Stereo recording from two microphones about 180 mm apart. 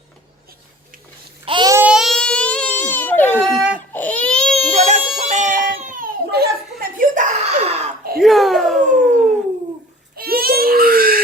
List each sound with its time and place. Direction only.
1.5 s babbling: 25° right (ahead or behind)
1.8 s baby cry: 5° right (ahead or behind)
3.5 s baby cry: 5° right (ahead or behind)
3.9 s baby cry: 10° left (ahead or behind)
4.7 s a sound: 40° right (ahead or behind)
5.6 s crying: 50° right (ahead or behind)
8.2 s a sound: centre (ahead or behind)
10.2 s baby cry: 55° right (ahead or behind)